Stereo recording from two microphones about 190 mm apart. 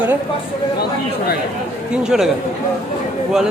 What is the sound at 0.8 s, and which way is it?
Speech, 55° left (ahead or behind).